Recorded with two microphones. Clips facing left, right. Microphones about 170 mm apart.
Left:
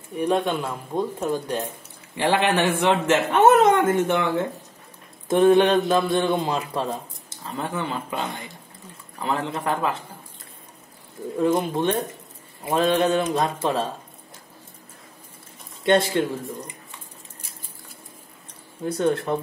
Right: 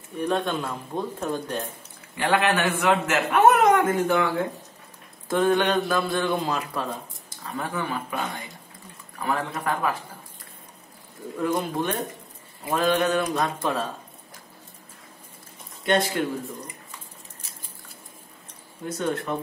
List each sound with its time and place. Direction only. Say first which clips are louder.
0.2 s a man's voice: left 3 dB; 10° left (ahead or behind)
2.1 s speech: left 2 dB; 25° left (ahead or behind)
9.2 s speech: left 2 dB; 25° left (ahead or behind)
11.3 s speech: left 4 dB; 25° left (ahead or behind)
15.8 s speech: left 4 dB; 25° left (ahead or behind)
18.9 s speech: left 5 dB; 30° left (ahead or behind)